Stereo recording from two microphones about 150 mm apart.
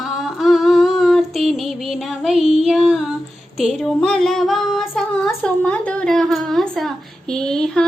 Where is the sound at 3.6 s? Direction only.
Centre (ahead or behind).